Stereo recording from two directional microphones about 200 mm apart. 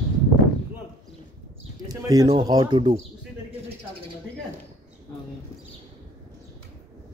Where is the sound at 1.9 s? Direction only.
20° right (ahead or behind).